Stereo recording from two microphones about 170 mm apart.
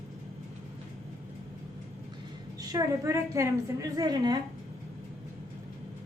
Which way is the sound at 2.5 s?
20° right (ahead or behind).